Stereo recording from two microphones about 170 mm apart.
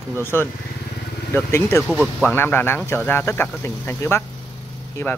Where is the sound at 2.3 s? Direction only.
10° left (ahead or behind).